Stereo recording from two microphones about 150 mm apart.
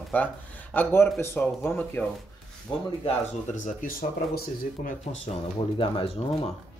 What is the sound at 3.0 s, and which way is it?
Speech, 50° left (ahead or behind).